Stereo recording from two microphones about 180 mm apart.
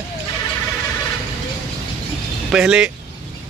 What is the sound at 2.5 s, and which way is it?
Speech, 5° right (ahead or behind).